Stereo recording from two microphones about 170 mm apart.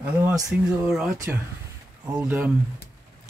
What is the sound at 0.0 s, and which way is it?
Speech, 10° right (ahead or behind).